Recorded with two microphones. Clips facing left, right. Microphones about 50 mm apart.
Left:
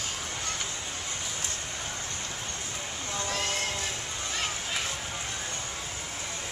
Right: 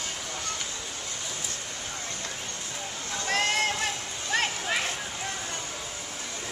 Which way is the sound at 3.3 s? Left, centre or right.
Right.